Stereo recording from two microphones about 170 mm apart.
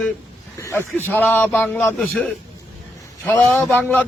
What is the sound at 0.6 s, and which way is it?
A man's voice, 15° left (ahead or behind).